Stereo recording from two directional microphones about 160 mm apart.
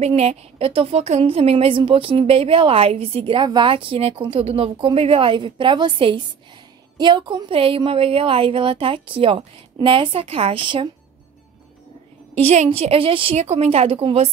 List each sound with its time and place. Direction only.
0.0 s a woman's voice: 40° right (ahead or behind)
12.4 s a woman's voice: 40° right (ahead or behind)